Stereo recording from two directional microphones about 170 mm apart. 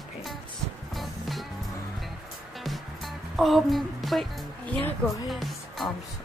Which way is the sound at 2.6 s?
Centre (ahead or behind).